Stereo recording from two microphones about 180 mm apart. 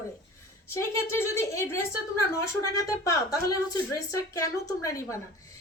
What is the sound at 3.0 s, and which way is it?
Speech, 20° left (ahead or behind).